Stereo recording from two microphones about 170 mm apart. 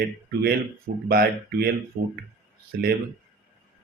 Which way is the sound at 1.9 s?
45° right (ahead or behind).